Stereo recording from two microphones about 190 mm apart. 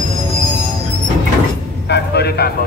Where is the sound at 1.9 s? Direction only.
60° left (ahead or behind).